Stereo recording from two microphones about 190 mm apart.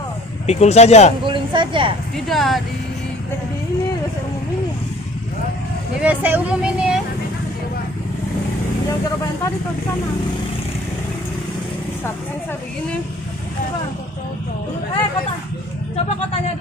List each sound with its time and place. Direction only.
0.5 s speech: 35° left (ahead or behind)
1.2 s a sound: 25° right (ahead or behind)
2.2 s speech: centre (ahead or behind)
5.9 s speech: 10° right (ahead or behind)